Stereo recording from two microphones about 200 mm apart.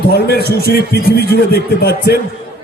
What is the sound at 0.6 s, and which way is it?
Speech, 50° left (ahead or behind).